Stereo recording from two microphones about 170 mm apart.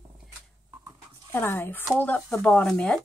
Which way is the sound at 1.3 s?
10° left (ahead or behind).